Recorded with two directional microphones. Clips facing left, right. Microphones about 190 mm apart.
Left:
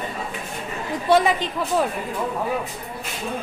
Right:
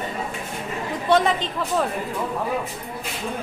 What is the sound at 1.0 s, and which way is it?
Speech, 5° left (ahead or behind).